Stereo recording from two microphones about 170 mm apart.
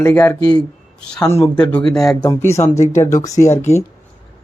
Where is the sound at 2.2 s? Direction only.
15° left (ahead or behind).